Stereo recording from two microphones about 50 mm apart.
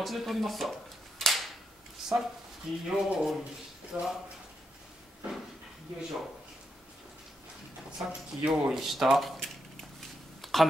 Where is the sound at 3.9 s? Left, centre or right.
Right.